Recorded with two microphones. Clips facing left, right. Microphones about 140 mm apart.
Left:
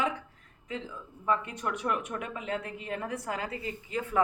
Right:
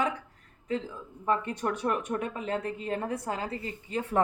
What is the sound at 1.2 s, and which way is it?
A woman's voice, 35° right (ahead or behind).